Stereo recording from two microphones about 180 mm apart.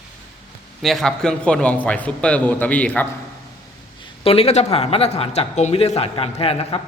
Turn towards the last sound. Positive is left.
turn(degrees=35)  # may be behind; listen again after turning